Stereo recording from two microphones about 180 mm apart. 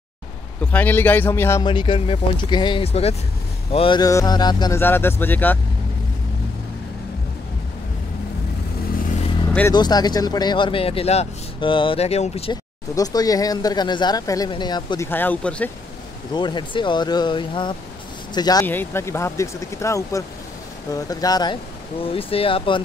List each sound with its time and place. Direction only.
0.6 s speech: 10° left (ahead or behind)
1.6 s speech: 25° left (ahead or behind)
4.7 s speech: 10° left (ahead or behind)
9.5 s speech: 10° left (ahead or behind)
9.8 s speech: 25° left (ahead or behind)
12.9 s speech: 20° left (ahead or behind)
15.0 s speech: 10° left (ahead or behind)
16.3 s speech: 25° left (ahead or behind)